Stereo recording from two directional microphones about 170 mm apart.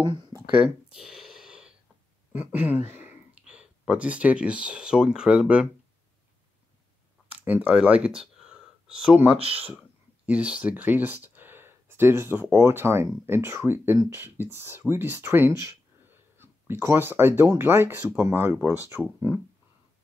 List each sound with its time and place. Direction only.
0.0 s speech: 30° right (ahead or behind)
0.5 s speech: 10° right (ahead or behind)
0.9 s a sound: centre (ahead or behind)
2.3 s speech: 10° right (ahead or behind)
7.3 s speech: 10° right (ahead or behind)